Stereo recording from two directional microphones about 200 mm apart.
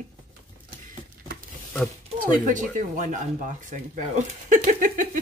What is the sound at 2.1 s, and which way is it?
Speech, 40° right (ahead or behind).